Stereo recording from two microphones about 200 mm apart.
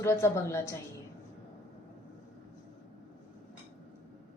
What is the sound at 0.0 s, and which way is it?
Speech, 15° left (ahead or behind).